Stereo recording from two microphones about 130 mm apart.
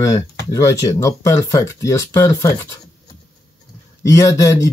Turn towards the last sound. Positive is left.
turn(degrees=25)  # may be behind; listen again after turning